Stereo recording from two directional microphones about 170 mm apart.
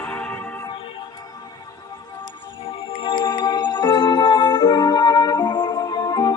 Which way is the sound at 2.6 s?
30° left (ahead or behind).